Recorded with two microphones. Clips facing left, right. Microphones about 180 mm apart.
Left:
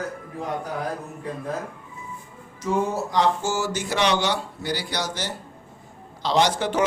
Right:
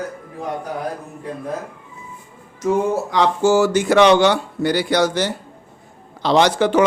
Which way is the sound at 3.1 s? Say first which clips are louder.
Right 6 dB; 70° right (ahead or behind).